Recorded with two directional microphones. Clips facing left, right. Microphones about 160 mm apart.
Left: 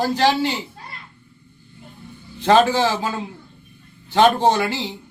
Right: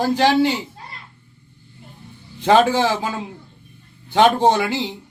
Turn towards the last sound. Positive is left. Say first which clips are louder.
# right 1 dB
turn(degrees=-15)  # may be behind; listen again after turning